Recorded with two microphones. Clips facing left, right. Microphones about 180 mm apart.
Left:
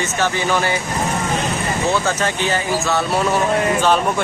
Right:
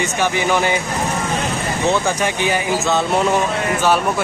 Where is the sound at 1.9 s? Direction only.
15° right (ahead or behind).